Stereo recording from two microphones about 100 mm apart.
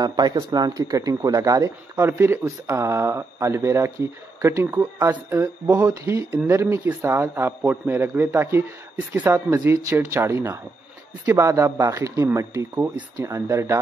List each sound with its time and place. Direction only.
0.0 s speech: 45° right (ahead or behind)
5.7 s speech: 20° right (ahead or behind)